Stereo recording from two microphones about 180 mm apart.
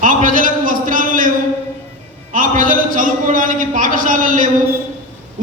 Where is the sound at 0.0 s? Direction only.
45° right (ahead or behind).